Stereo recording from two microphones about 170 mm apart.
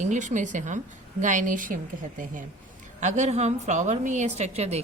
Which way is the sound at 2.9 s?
45° right (ahead or behind).